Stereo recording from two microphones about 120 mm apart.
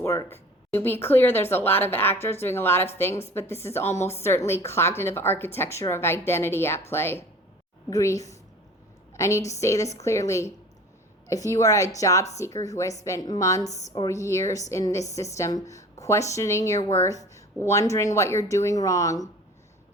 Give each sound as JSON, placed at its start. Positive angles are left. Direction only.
{"t": 0.0, "sound": "a woman's voice", "side_deg": 25}